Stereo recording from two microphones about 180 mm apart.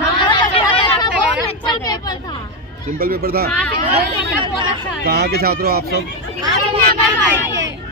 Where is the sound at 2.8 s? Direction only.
55° right (ahead or behind).